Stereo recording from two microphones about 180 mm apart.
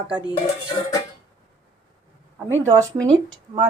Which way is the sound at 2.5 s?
15° right (ahead or behind).